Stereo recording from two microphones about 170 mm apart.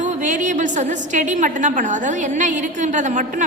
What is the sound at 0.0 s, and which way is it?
A woman's voice, 45° right (ahead or behind).